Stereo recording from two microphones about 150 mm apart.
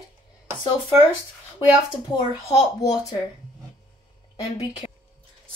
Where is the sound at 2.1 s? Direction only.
25° left (ahead or behind).